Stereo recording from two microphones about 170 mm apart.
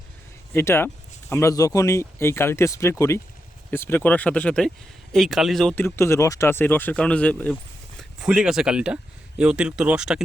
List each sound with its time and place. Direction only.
0.5 s speech: 15° left (ahead or behind)
5.8 s speech: 15° left (ahead or behind)
8.2 s speech: 5° right (ahead or behind)